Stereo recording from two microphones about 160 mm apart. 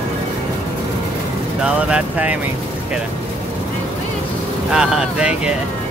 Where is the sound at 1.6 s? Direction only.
5° right (ahead or behind).